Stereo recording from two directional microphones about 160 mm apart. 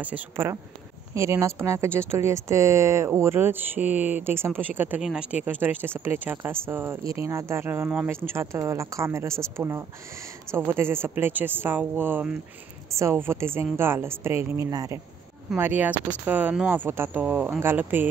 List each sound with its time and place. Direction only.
0.0 s speech: 10° right (ahead or behind)